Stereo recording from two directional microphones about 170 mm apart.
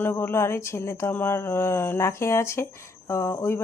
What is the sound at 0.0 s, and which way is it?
Speech, 15° left (ahead or behind).